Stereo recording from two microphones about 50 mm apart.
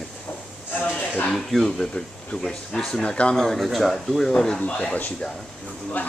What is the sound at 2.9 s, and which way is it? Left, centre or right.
Speech, centre.